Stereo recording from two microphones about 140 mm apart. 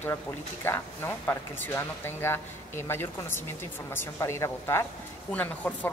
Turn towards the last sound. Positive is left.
turn(degrees=10)  # may be behind; listen again after turning